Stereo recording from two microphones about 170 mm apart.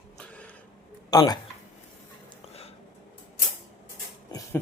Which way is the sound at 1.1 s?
25° left (ahead or behind).